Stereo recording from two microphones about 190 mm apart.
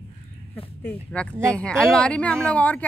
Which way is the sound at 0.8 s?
5° left (ahead or behind).